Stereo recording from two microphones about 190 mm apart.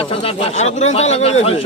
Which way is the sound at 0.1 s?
30° left (ahead or behind).